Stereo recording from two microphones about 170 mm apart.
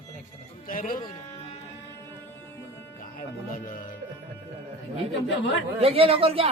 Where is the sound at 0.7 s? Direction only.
55° left (ahead or behind).